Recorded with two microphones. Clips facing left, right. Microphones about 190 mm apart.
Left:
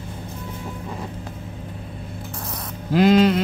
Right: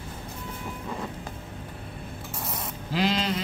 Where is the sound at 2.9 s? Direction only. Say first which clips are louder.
Left 11 dB; 50° left (ahead or behind).